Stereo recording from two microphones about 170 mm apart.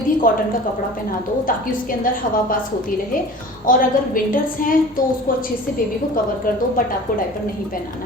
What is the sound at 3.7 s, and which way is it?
A woman's voice, 55° left (ahead or behind).